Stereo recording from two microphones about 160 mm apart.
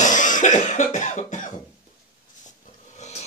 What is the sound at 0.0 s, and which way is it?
Cough, 50° left (ahead or behind).